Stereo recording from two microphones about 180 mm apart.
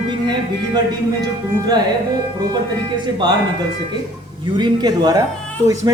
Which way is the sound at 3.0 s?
25° right (ahead or behind).